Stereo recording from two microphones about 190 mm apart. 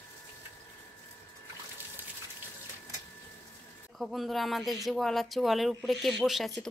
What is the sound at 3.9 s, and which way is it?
Speech, centre (ahead or behind).